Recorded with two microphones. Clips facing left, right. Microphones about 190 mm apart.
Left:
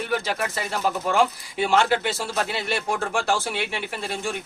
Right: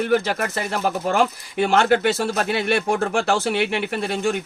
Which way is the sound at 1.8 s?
55° right (ahead or behind).